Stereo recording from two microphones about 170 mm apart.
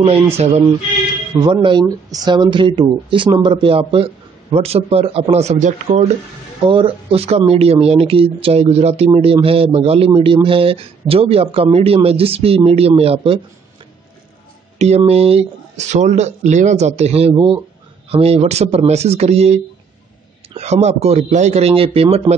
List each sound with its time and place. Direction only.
0.0 s speech: 35° right (ahead or behind)
6.6 s speech: 30° right (ahead or behind)
14.8 s speech: 40° right (ahead or behind)
17.3 s speech: 25° right (ahead or behind)
18.1 s speech: 35° right (ahead or behind)